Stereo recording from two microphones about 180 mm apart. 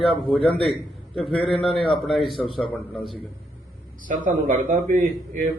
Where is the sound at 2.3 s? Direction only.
30° left (ahead or behind).